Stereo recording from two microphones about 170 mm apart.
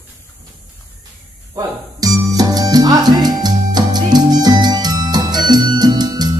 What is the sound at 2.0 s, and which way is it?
Music, 20° right (ahead or behind).